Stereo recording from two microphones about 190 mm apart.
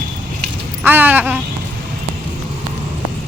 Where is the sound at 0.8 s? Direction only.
10° right (ahead or behind).